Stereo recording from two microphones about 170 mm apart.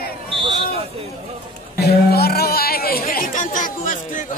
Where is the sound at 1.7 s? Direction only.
65° left (ahead or behind).